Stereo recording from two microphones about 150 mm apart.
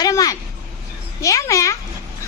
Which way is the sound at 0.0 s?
25° left (ahead or behind).